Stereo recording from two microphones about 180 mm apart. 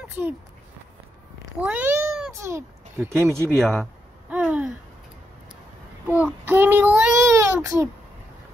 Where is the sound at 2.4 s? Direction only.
15° right (ahead or behind).